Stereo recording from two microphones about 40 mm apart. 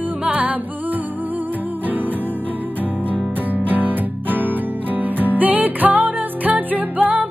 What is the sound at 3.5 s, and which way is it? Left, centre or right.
Music, right.